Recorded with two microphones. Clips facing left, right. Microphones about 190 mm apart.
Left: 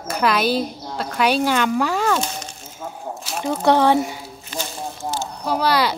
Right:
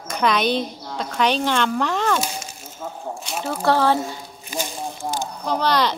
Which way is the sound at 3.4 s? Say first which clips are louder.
Left 3 dB; 20° left (ahead or behind).